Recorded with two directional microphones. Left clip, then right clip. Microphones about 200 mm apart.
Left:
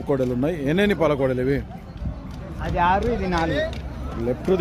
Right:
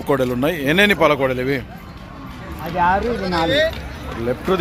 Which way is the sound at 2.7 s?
25° right (ahead or behind).